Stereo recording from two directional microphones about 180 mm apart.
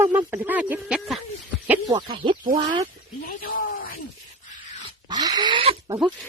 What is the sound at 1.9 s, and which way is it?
Speech, 30° right (ahead or behind).